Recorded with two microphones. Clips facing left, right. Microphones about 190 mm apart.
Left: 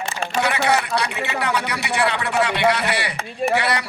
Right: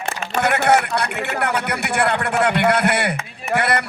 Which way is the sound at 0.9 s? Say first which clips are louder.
Right 1 dB; 55° right (ahead or behind).